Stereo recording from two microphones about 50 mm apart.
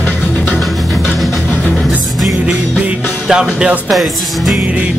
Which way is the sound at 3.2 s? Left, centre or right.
Centre.